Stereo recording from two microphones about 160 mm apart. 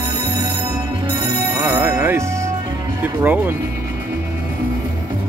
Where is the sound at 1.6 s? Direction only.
15° right (ahead or behind).